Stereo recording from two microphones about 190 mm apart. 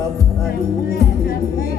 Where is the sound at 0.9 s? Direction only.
55° left (ahead or behind).